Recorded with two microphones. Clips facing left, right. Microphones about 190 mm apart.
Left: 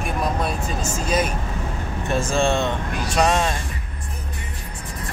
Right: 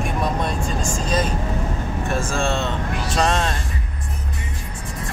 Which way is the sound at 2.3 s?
15° left (ahead or behind).